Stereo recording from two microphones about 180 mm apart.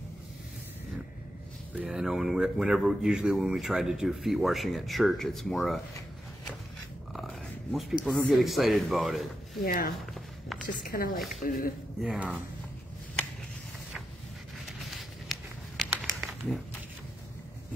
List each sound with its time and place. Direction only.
1.8 s speech: 5° right (ahead or behind)
7.1 s speech: centre (ahead or behind)
9.6 s a woman's voice: 50° left (ahead or behind)
10.1 s a sound: centre (ahead or behind)
10.7 s a woman's voice: 50° left (ahead or behind)
12.0 s speech: 5° right (ahead or behind)
14.7 s a sound: centre (ahead or behind)